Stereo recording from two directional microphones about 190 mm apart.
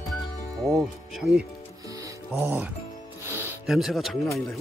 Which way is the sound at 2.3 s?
10° right (ahead or behind).